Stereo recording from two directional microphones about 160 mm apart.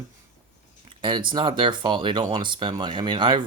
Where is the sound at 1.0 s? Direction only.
30° right (ahead or behind).